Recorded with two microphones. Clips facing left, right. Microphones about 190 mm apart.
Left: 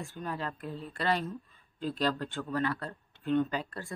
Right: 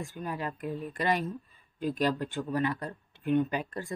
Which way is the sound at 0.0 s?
15° right (ahead or behind).